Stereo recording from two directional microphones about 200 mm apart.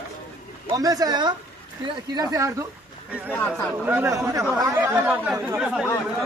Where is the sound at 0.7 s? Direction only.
15° right (ahead or behind).